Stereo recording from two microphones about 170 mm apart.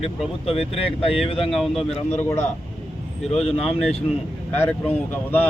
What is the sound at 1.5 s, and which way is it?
Speech, centre (ahead or behind).